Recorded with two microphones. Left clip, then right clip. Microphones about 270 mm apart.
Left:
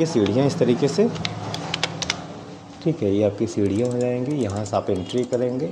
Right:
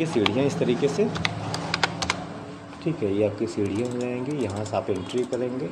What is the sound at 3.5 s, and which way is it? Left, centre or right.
Speech, left.